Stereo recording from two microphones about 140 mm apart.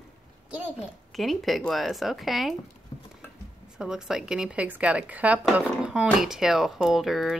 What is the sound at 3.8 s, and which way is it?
A woman's voice, 5° right (ahead or behind).